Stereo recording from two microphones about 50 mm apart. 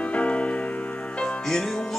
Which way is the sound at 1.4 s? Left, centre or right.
Centre.